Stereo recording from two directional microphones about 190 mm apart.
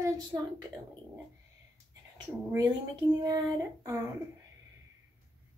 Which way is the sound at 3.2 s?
20° right (ahead or behind).